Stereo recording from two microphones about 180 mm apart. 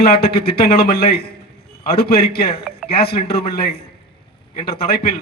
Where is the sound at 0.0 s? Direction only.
60° left (ahead or behind).